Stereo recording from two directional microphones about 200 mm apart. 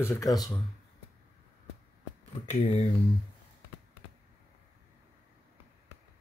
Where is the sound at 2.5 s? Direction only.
35° left (ahead or behind).